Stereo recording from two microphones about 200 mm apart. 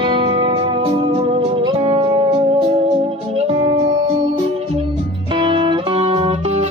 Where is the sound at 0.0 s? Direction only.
25° right (ahead or behind).